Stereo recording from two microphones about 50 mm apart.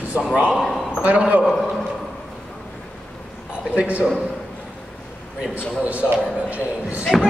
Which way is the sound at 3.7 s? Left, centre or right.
Right.